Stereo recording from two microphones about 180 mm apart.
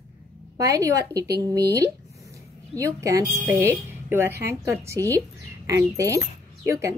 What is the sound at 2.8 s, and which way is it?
A woman's voice, 15° right (ahead or behind).